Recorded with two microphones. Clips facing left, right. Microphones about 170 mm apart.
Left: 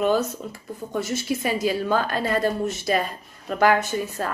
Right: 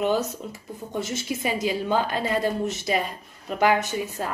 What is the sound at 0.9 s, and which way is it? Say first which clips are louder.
Speech: left 3 dB; 20° right (ahead or behind).